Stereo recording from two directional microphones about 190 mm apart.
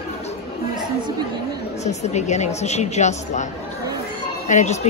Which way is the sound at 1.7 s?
35° left (ahead or behind).